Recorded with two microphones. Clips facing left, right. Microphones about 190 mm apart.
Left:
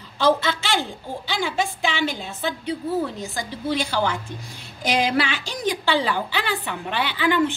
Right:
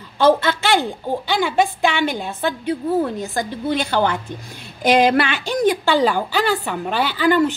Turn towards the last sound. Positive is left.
turn(degrees=-40)  # may be behind; listen again after turning